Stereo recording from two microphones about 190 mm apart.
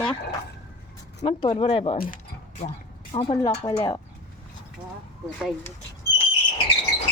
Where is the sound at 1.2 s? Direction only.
25° left (ahead or behind).